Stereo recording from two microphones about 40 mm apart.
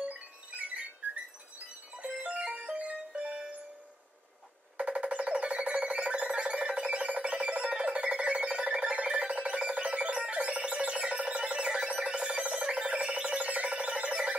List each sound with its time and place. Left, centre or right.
0.0 s music: right
2.0 s music: right
4.7 s music: right
12.3 s a sound: right
12.5 s a sound: centre
12.8 s music: right